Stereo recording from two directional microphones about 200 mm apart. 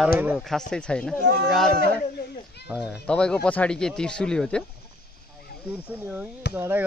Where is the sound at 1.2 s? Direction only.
60° right (ahead or behind).